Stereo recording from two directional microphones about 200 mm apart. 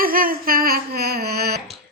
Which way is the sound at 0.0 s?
45° right (ahead or behind).